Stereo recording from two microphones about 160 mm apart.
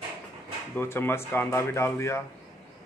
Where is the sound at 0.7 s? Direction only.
15° left (ahead or behind).